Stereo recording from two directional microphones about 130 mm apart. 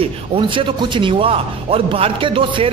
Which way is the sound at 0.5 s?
40° right (ahead or behind).